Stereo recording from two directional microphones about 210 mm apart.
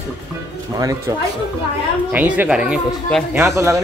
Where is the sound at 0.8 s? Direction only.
15° right (ahead or behind).